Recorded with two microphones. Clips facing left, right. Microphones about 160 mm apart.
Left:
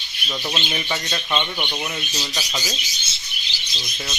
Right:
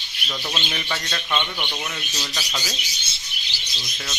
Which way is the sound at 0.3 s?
15° left (ahead or behind).